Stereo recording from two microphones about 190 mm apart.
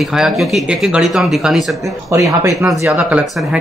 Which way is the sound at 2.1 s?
15° right (ahead or behind).